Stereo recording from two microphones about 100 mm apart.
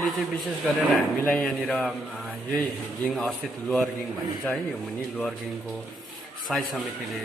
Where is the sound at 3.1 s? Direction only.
5° left (ahead or behind).